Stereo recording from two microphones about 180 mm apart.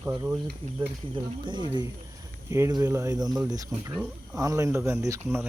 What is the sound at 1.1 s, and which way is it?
Speech, 25° right (ahead or behind).